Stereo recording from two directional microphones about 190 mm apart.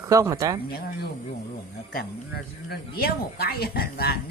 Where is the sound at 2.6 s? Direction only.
55° left (ahead or behind).